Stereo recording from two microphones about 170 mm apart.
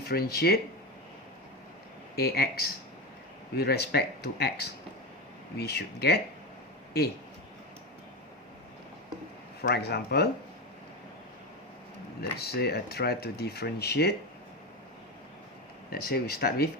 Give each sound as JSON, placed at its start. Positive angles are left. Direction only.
{"t": 0.0, "sound": "speech", "side_deg": 65}
{"t": 2.1, "sound": "speech", "side_deg": 65}
{"t": 9.6, "sound": "speech", "side_deg": 75}
{"t": 12.2, "sound": "speech", "side_deg": 70}
{"t": 15.9, "sound": "speech", "side_deg": 60}